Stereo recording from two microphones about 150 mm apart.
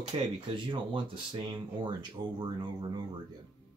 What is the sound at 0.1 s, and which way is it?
Speech, 40° right (ahead or behind).